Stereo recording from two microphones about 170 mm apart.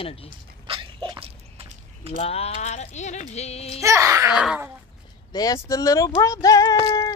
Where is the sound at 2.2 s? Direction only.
35° left (ahead or behind).